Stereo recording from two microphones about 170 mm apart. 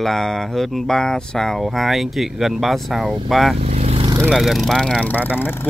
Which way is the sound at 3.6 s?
40° right (ahead or behind).